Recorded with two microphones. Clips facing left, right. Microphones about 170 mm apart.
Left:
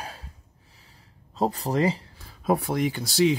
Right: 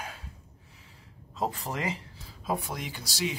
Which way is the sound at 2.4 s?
60° left (ahead or behind).